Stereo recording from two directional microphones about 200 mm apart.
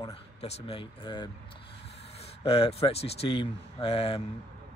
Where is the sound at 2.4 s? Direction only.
30° left (ahead or behind).